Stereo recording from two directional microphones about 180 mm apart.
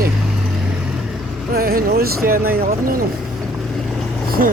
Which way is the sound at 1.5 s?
55° right (ahead or behind).